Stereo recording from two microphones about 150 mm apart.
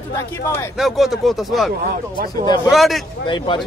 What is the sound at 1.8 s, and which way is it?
Speech, 85° right.